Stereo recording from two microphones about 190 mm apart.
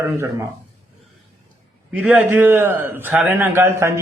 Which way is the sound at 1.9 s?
10° right (ahead or behind).